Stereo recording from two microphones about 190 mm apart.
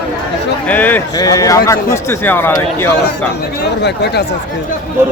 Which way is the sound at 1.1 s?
20° left (ahead or behind).